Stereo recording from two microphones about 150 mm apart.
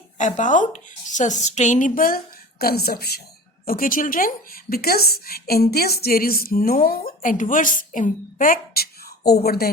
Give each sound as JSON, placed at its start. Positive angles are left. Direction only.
{"t": 0.2, "sound": "a woman's voice", "side_deg": 55}
{"t": 3.7, "sound": "a woman's voice", "side_deg": 70}